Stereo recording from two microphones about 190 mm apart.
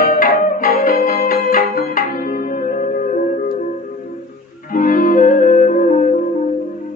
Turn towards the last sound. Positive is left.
turn(degrees=40)  # may be behind; listen again after turning